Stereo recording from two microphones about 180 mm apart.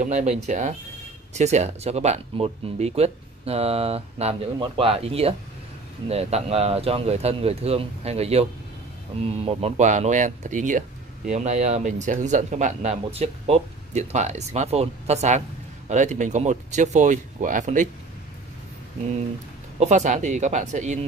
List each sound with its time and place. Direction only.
0.0 s speech: 40° right (ahead or behind)
19.8 s speech: 40° right (ahead or behind)